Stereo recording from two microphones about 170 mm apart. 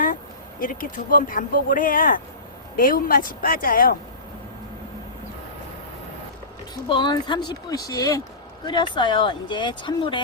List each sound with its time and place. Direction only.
0.6 s speech: 55° left (ahead or behind)
6.8 s speech: 25° left (ahead or behind)